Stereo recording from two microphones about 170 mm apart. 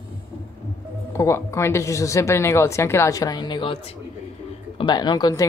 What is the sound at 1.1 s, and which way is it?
A woman's voice, 15° left (ahead or behind).